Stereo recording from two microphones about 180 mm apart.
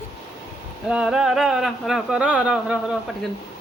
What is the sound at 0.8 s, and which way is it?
Speech, 5° right (ahead or behind).